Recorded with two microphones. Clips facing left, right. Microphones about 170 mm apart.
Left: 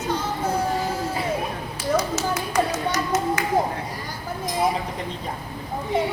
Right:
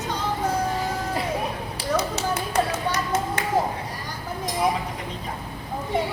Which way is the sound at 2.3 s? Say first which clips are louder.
Even; 30° right (ahead or behind).